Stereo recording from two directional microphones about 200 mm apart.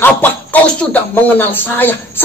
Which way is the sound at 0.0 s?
10° left (ahead or behind).